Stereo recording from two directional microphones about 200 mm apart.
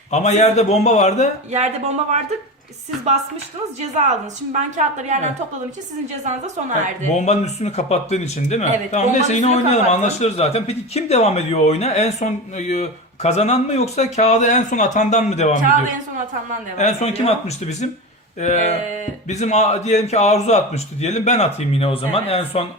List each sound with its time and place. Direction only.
0.1 s speech: 35° left (ahead or behind)
1.5 s speech: 35° right (ahead or behind)
4.8 s speech: 35° right (ahead or behind)
7.2 s speech: 35° left (ahead or behind)
16.7 s speech: 35° left (ahead or behind)